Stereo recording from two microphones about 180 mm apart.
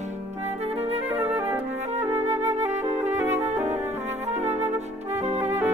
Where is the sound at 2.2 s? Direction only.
40° right (ahead or behind).